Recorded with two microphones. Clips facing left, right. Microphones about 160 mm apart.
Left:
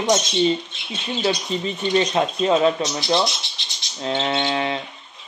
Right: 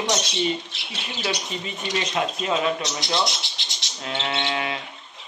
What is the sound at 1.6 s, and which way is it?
Speech, 35° left (ahead or behind).